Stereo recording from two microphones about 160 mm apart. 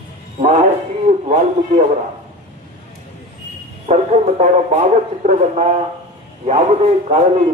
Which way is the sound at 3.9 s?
40° right (ahead or behind).